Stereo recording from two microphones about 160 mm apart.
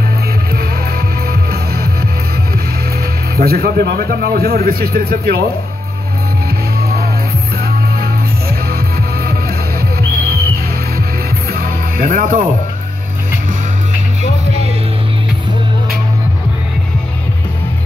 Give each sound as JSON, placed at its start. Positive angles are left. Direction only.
{"t": 1.3, "sound": "music", "side_deg": -70}
{"t": 3.3, "sound": "a man's voice", "side_deg": -70}
{"t": 6.8, "sound": "music", "side_deg": -75}
{"t": 11.5, "sound": "music", "side_deg": -65}